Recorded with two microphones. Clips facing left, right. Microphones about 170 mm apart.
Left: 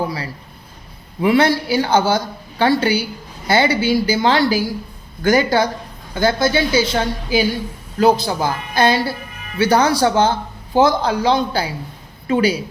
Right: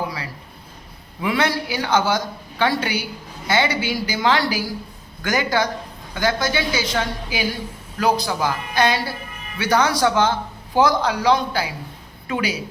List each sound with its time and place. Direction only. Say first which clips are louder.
1.2 s speech: left 7 dB; 30° left (ahead or behind)